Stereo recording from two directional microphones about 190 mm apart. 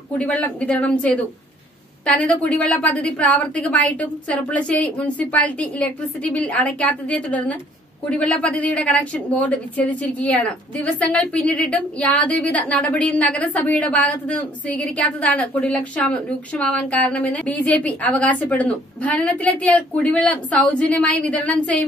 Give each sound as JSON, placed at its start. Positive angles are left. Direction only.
{"t": 0.2, "sound": "a woman's voice", "side_deg": 5}